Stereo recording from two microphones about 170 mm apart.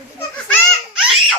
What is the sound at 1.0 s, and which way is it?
Baby laughter, 5° right (ahead or behind).